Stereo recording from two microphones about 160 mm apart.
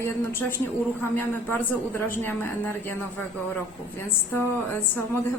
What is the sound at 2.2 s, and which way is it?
Speech, 15° left (ahead or behind).